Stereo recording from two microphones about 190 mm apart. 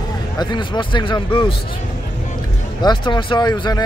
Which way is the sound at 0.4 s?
25° left (ahead or behind).